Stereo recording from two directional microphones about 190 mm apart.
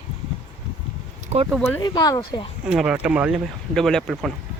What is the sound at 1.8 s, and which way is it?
Speech, 20° left (ahead or behind).